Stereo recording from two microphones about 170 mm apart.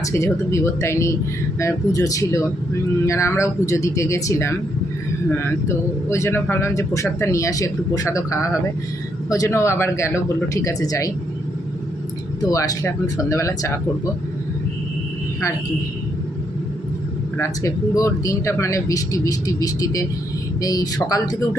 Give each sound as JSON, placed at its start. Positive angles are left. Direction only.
{"t": 0.0, "sound": "speech", "side_deg": 15}
{"t": 12.5, "sound": "speech", "side_deg": 20}
{"t": 17.3, "sound": "speech", "side_deg": 15}